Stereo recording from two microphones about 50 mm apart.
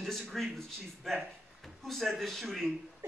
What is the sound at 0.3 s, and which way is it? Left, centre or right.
Speech, centre.